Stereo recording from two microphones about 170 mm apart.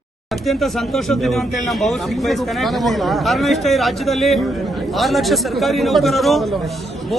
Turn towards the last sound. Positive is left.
turn(degrees=0)  # may be behind; listen again after turning